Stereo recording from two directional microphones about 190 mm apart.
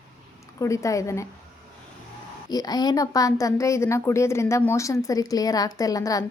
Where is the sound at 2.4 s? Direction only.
20° left (ahead or behind).